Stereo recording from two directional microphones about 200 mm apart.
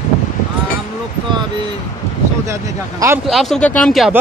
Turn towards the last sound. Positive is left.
turn(degrees=0)  # may be behind; listen again after turning